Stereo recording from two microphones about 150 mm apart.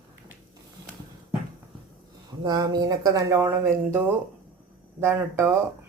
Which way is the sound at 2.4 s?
25° right (ahead or behind).